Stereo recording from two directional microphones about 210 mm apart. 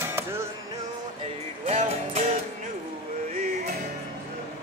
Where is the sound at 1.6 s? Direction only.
30° right (ahead or behind).